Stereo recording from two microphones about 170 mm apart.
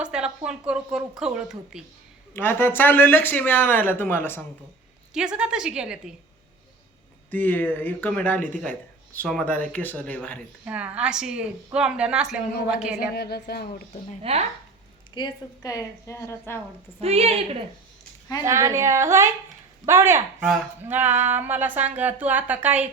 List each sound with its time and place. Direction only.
0.0 s a woman's voice: 5° right (ahead or behind)
2.3 s speech: 10° left (ahead or behind)
5.1 s a woman's voice: 5° right (ahead or behind)
7.3 s speech: 10° left (ahead or behind)
10.7 s a woman's voice: 5° right (ahead or behind)
13.1 s a woman's voice: 70° left (ahead or behind)
14.2 s a woman's voice: 35° right (ahead or behind)
15.1 s a woman's voice: 25° left (ahead or behind)
17.0 s a woman's voice: 35° right (ahead or behind)
18.4 s speech: 15° right (ahead or behind)